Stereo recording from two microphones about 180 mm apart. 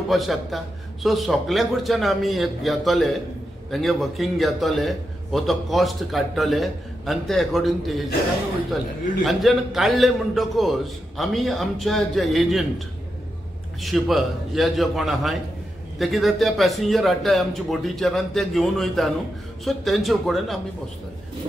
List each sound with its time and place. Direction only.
0.1 s a man's voice: centre (ahead or behind)
9.2 s a man's voice: centre (ahead or behind)